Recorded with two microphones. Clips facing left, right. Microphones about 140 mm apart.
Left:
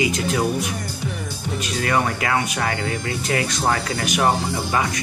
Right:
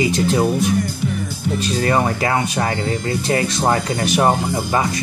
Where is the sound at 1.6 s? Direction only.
30° right (ahead or behind).